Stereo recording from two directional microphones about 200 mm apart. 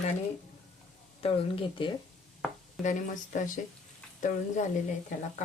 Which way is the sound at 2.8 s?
40° left (ahead or behind).